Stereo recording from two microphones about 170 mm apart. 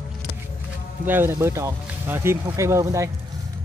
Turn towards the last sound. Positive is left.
turn(degrees=-20)  # may be behind; listen again after turning